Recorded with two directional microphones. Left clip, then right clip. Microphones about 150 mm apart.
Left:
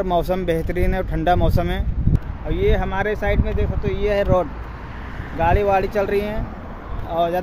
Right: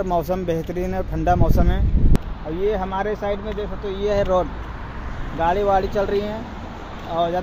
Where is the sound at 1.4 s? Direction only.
50° left (ahead or behind).